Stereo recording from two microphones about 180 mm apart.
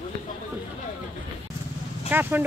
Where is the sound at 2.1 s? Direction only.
10° right (ahead or behind).